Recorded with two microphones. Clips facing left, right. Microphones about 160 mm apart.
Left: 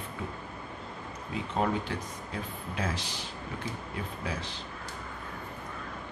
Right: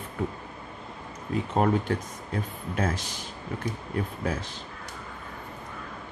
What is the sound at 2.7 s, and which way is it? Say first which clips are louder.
Speech: right 5 dB; 45° right (ahead or behind).